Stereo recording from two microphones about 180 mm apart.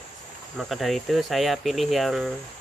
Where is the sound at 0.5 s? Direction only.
Centre (ahead or behind).